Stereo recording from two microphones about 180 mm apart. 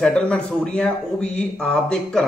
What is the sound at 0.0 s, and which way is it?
A man's voice, 5° left (ahead or behind).